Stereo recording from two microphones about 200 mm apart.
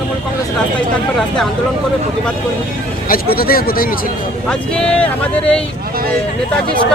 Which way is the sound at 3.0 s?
45° left (ahead or behind).